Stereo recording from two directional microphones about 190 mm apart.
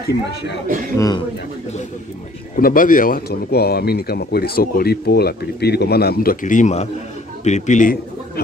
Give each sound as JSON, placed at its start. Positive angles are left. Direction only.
{"t": 0.3, "sound": "speech", "side_deg": 60}
{"t": 0.9, "sound": "a man's voice", "side_deg": 20}
{"t": 2.5, "sound": "speech", "side_deg": 45}